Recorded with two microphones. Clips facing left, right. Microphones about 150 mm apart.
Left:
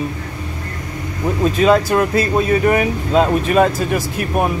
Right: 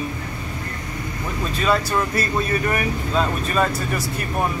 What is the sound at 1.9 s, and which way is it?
Speech, 80° left.